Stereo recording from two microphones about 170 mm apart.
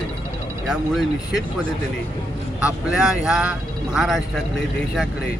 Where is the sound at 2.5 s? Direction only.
5° right (ahead or behind).